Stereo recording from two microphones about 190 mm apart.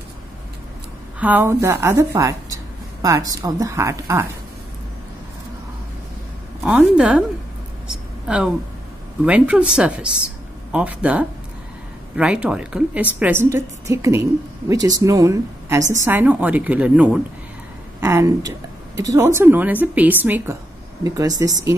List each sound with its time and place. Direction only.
1.2 s a woman's voice: 10° right (ahead or behind)
6.6 s a woman's voice: 5° right (ahead or behind)
8.3 s a woman's voice: 5° right (ahead or behind)